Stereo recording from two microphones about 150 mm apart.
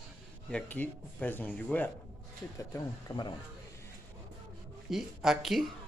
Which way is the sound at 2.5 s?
25° left (ahead or behind).